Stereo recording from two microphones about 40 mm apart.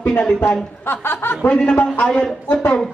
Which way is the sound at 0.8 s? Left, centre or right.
Left.